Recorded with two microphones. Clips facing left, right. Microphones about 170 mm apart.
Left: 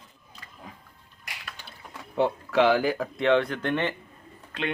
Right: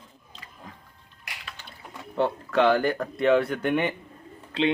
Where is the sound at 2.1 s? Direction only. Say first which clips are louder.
Even; 5° left (ahead or behind); by 3.9 s 10° right (ahead or behind).